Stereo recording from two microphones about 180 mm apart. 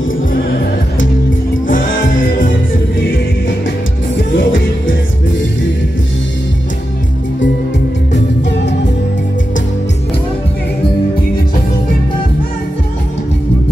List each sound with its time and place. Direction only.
2.0 s music: 50° left (ahead or behind)
4.4 s music: 90° left
8.1 s music: 75° left (ahead or behind)